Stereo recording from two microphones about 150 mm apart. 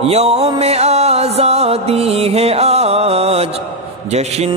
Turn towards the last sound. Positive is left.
turn(degrees=-45)  # may be behind; listen again after turning